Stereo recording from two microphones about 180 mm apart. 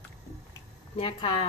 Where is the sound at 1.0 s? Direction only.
30° left (ahead or behind).